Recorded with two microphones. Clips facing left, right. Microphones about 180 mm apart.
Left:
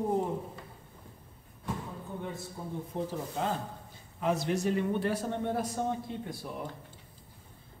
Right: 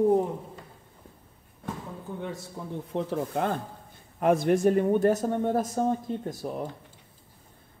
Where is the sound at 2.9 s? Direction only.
60° right (ahead or behind); by 6.5 s 45° right (ahead or behind).